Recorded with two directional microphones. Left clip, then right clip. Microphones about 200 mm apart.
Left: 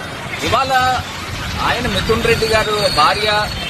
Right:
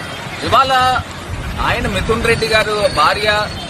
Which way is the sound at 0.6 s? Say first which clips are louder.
Right 3 dB; 20° right (ahead or behind).